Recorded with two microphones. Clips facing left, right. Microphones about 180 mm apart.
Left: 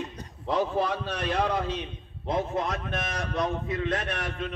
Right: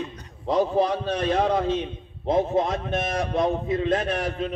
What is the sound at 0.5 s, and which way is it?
A man's voice, 40° right (ahead or behind).